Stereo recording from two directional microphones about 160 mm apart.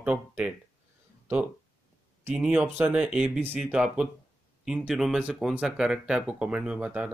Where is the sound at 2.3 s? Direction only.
5° right (ahead or behind).